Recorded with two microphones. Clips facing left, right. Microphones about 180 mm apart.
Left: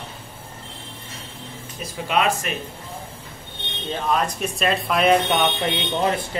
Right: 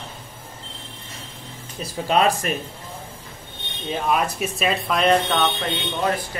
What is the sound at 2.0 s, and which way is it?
Speech, 35° right (ahead or behind).